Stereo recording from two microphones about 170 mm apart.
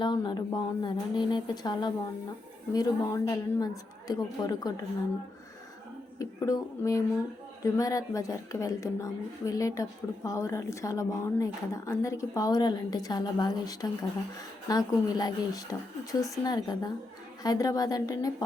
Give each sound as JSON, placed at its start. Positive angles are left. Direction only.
{"t": 0.0, "sound": "a woman's voice", "side_deg": 25}
{"t": 6.1, "sound": "a woman's voice", "side_deg": 20}